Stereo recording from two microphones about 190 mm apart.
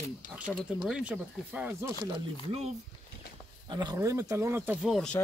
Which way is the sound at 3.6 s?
20° right (ahead or behind).